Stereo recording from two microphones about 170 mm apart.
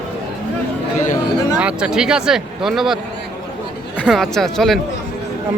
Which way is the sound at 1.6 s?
5° right (ahead or behind).